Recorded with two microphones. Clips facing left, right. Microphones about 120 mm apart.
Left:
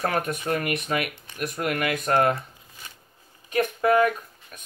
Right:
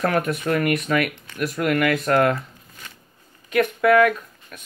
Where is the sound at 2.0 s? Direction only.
25° left (ahead or behind).